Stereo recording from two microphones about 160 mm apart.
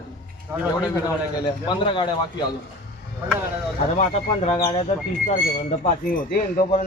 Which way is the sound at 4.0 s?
40° left (ahead or behind).